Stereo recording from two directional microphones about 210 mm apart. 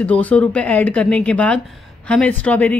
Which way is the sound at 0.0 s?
5° left (ahead or behind).